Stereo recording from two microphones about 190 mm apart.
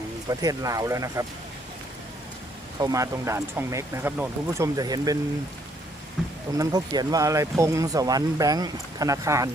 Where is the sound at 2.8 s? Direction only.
15° right (ahead or behind).